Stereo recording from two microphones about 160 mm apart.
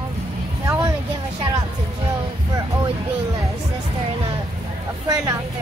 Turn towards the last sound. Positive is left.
turn(degrees=-20)  # may be behind; listen again after turning